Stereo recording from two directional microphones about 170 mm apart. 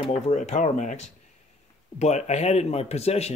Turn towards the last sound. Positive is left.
turn(degrees=40)  # may be behind; listen again after turning